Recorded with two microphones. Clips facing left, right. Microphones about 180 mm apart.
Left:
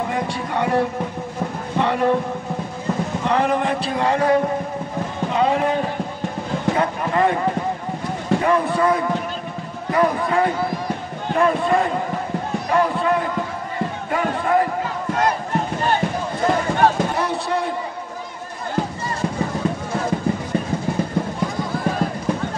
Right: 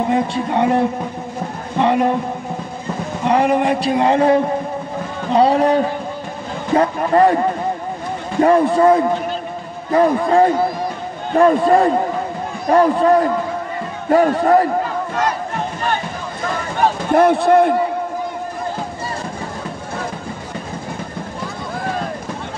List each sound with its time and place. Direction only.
0.1 s speech: 25° right (ahead or behind)
3.3 s speech: 10° right (ahead or behind)
5.3 s a man's voice: 35° right (ahead or behind)
6.8 s speech: 40° right (ahead or behind)
8.4 s a man's voice: 35° right (ahead or behind)
17.1 s a man's voice: 55° right (ahead or behind)